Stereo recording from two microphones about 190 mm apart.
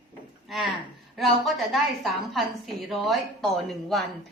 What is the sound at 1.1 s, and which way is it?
A woman's voice, centre (ahead or behind).